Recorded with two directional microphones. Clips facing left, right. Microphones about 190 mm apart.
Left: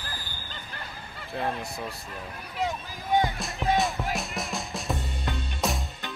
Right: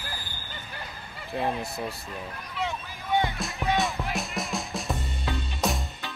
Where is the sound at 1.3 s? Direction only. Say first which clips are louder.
Right 2 dB; 5° right (ahead or behind).